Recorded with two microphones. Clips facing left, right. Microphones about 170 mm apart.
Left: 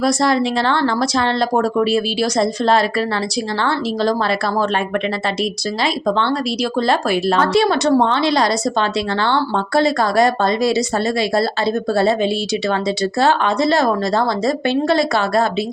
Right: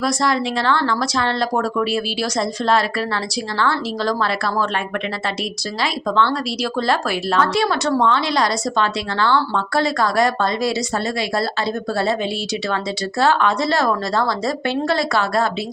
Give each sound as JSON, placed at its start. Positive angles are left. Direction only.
{"t": 0.0, "sound": "speech", "side_deg": 25}
{"t": 5.8, "sound": "speech", "side_deg": 20}